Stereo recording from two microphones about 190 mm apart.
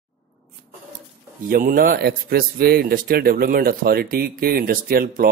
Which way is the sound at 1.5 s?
45° right (ahead or behind).